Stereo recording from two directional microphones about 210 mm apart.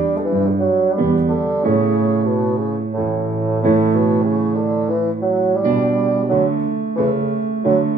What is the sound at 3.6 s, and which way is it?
Cello, 35° right (ahead or behind).